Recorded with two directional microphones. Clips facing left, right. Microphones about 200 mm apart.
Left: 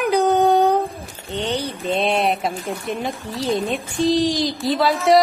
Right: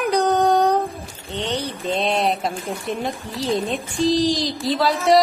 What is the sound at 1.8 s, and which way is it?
A woman's voice, centre (ahead or behind).